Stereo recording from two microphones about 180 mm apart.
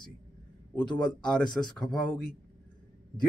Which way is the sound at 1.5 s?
25° left (ahead or behind).